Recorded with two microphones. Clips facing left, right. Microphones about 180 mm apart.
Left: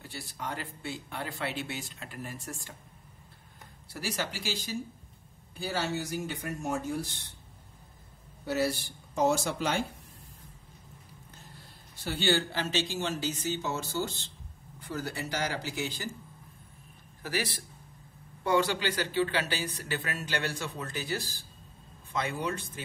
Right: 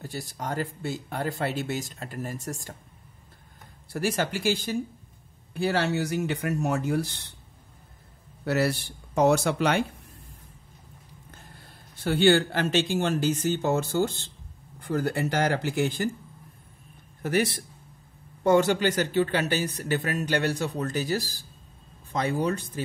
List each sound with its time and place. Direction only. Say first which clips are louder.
0.0 s speech: right 5 dB; 45° right (ahead or behind)
3.9 s speech: right 8 dB; 50° right (ahead or behind)
5.5 s speech: right 7 dB; 65° right (ahead or behind)
8.5 s speech: right 4 dB; 70° right (ahead or behind)
12.0 s speech: right 8 dB; 55° right (ahead or behind)
18.4 s speech: right 7 dB; 50° right (ahead or behind)